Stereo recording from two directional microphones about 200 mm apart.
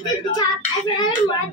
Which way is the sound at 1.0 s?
20° left (ahead or behind).